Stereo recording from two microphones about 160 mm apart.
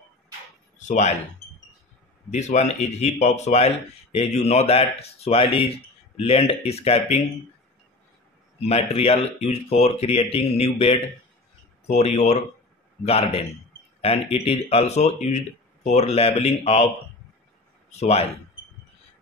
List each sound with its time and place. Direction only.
0.7 s a sound: 50° left (ahead or behind)
2.3 s speech: 45° left (ahead or behind)
8.5 s speech: 40° left (ahead or behind)
17.9 s speech: 40° left (ahead or behind)